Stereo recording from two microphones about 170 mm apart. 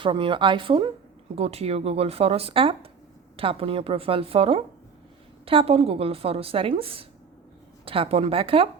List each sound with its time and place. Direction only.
0.0 s a woman's voice: 30° right (ahead or behind)